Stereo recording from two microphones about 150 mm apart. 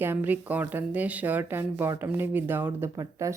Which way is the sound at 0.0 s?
15° right (ahead or behind).